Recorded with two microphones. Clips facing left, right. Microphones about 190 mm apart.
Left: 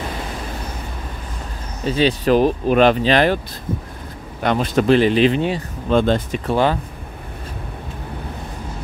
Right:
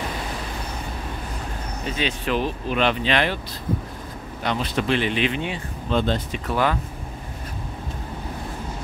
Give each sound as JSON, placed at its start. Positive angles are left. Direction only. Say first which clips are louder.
{"t": 1.9, "sound": "speech", "louder": "left 9 dB", "side_deg": 35}
{"t": 4.4, "sound": "speech", "louder": "left 7 dB", "side_deg": 50}
{"t": 5.9, "sound": "speech", "louder": "left 6 dB", "side_deg": 50}
{"t": 6.4, "sound": "speech", "louder": "left 4 dB", "side_deg": 30}